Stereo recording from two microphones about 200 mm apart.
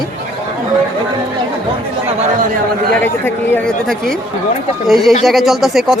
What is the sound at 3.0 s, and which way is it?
A woman's voice, 10° left (ahead or behind).